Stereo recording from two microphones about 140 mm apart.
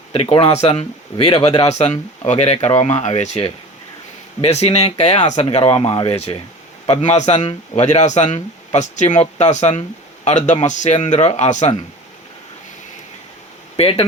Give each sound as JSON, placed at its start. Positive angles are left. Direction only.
{"t": 0.1, "sound": "speech", "side_deg": 40}
{"t": 13.7, "sound": "speech", "side_deg": 45}